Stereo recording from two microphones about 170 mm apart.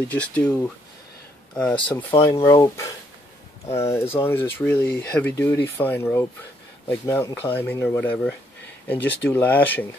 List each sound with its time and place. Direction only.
0.1 s speech: 10° left (ahead or behind)